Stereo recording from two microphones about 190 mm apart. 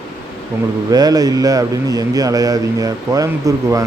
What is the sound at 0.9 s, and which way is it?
A man's voice, 20° right (ahead or behind).